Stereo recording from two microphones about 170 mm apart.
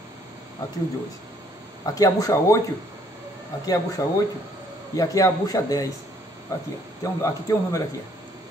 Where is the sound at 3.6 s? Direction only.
20° left (ahead or behind).